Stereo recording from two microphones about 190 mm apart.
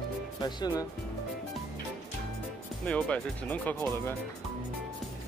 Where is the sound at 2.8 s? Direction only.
5° left (ahead or behind).